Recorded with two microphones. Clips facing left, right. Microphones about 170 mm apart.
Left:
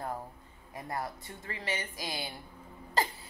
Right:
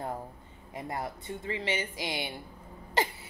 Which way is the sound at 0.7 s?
20° right (ahead or behind).